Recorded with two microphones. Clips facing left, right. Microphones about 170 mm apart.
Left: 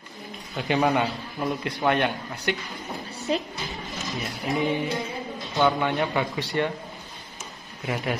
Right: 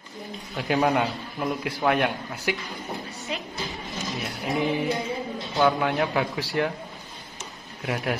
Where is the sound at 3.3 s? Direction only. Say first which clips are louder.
Left 8 dB; 35° left (ahead or behind).